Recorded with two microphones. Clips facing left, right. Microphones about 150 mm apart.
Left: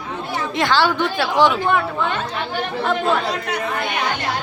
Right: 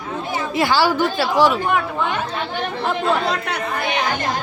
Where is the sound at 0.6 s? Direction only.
5° right (ahead or behind).